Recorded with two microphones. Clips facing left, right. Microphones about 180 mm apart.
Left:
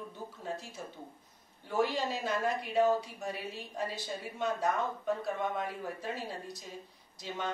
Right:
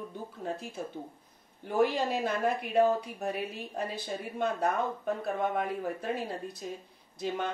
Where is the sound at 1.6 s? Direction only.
55° right (ahead or behind).